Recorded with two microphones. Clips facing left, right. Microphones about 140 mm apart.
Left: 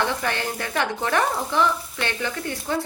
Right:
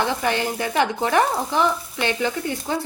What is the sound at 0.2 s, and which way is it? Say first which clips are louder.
Frying: right 4 dB; 15° right (ahead or behind).